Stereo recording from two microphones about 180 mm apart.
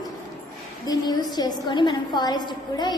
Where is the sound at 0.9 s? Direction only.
20° left (ahead or behind).